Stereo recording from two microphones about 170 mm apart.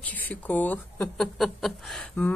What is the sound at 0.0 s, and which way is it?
Speech, 10° left (ahead or behind).